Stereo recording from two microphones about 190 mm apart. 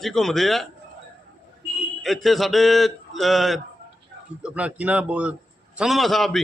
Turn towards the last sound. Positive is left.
turn(degrees=0)  # may be behind; listen again after turning